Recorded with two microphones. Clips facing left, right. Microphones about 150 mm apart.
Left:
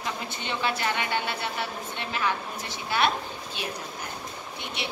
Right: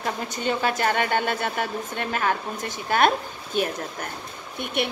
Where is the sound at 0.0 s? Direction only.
45° right (ahead or behind).